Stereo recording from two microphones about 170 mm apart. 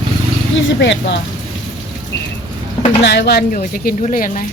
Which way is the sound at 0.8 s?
90° left.